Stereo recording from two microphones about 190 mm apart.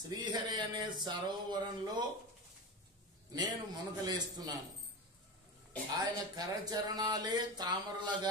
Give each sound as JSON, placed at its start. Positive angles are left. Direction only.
{"t": 0.1, "sound": "speech", "side_deg": -20}
{"t": 3.3, "sound": "speech", "side_deg": -20}
{"t": 5.9, "sound": "speech", "side_deg": -20}